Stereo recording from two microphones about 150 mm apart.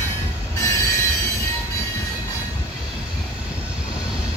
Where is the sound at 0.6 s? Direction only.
20° left (ahead or behind).